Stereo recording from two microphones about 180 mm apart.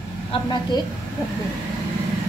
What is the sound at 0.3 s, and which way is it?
Speech, 25° left (ahead or behind).